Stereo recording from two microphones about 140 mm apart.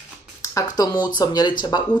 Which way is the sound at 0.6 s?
30° left (ahead or behind).